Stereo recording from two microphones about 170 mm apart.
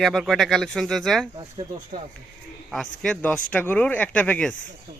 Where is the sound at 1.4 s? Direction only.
25° right (ahead or behind).